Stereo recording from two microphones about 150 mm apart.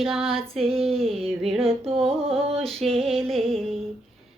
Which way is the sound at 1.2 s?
40° right (ahead or behind).